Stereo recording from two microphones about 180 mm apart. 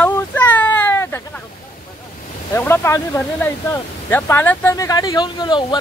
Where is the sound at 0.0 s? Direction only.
10° left (ahead or behind).